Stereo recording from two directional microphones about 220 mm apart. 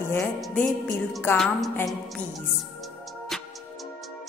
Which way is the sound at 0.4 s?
Centre (ahead or behind).